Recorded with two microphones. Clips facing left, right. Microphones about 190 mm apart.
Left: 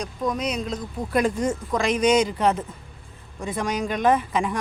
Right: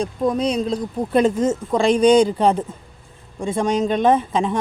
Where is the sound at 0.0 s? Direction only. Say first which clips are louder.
Right 6 dB; 30° right (ahead or behind).